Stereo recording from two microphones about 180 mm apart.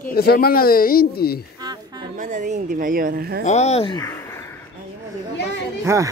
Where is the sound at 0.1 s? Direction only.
55° left (ahead or behind).